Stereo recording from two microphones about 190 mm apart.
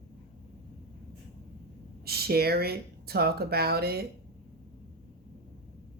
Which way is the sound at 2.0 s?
55° right (ahead or behind).